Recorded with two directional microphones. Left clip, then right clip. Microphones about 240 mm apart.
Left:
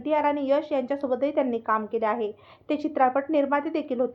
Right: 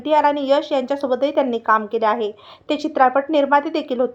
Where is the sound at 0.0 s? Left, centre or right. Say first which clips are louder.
Right 8 dB; centre.